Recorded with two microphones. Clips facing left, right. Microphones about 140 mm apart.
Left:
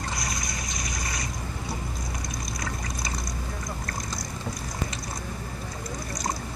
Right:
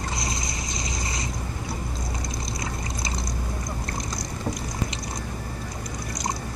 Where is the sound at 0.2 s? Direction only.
25° right (ahead or behind).